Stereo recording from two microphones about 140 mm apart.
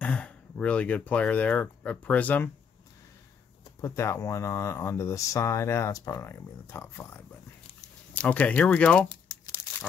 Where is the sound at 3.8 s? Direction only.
20° left (ahead or behind).